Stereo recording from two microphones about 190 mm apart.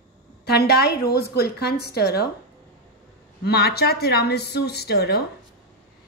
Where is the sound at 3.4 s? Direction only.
55° left (ahead or behind).